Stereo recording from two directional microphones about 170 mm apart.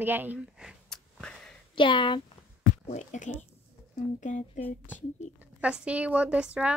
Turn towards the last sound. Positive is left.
turn(degrees=-5)  # may be behind; listen again after turning